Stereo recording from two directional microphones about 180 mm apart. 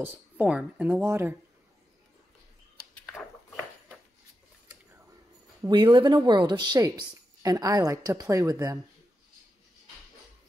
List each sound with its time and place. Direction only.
0.0 s speech: 10° right (ahead or behind)
5.6 s speech: 25° right (ahead or behind)